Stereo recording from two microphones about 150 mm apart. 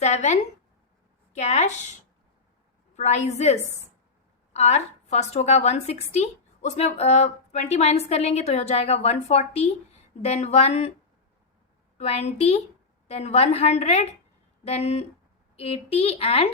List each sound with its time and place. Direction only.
0.0 s a woman's voice: 50° left (ahead or behind)
2.9 s a woman's voice: 50° left (ahead or behind)
11.9 s a woman's voice: 45° left (ahead or behind)